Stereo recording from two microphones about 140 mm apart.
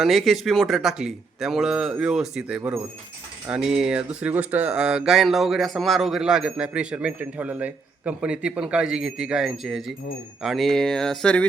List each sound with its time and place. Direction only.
0.0 s speech: centre (ahead or behind)
2.6 s speech: 15° right (ahead or behind); by 11.4 s 5° left (ahead or behind)